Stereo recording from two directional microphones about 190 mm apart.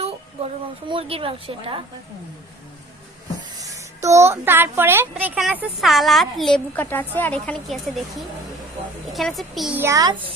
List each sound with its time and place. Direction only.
0.9 s a woman's voice: 30° right (ahead or behind)
3.5 s speech: 20° right (ahead or behind); by 8.0 s centre (ahead or behind)
9.1 s a woman's voice: centre (ahead or behind); by 10.3 s 20° right (ahead or behind)